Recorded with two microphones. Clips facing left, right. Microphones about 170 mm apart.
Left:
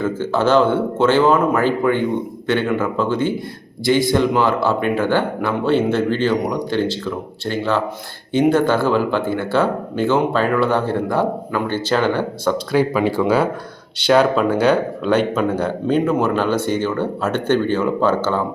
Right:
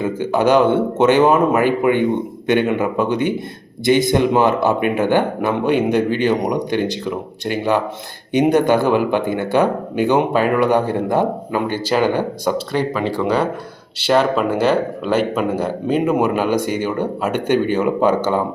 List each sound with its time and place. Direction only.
0.0 s speech: 15° right (ahead or behind)
12.7 s speech: 5° left (ahead or behind); by 18.4 s 15° right (ahead or behind)